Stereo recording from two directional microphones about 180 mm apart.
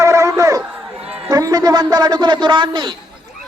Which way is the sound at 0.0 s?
15° right (ahead or behind).